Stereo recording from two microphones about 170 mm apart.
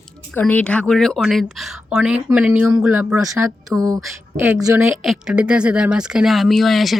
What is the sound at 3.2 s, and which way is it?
Speech, 20° right (ahead or behind).